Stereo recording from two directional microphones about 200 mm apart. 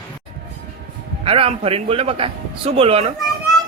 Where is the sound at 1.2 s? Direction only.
30° right (ahead or behind).